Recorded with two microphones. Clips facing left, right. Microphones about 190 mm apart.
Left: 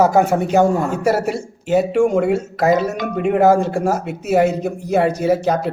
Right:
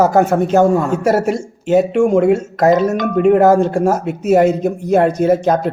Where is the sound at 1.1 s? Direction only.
50° right (ahead or behind).